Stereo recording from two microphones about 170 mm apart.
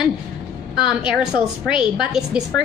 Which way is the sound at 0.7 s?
5° right (ahead or behind).